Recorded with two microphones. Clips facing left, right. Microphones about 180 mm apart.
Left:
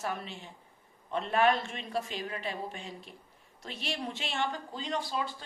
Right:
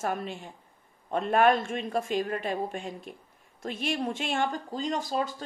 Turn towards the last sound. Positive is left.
turn(degrees=-45)  # may be behind; listen again after turning